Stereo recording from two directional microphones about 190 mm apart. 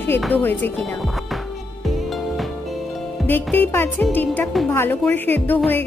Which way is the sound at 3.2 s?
10° left (ahead or behind).